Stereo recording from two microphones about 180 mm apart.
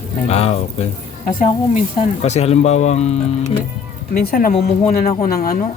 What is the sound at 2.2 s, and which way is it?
Speech, 35° left (ahead or behind).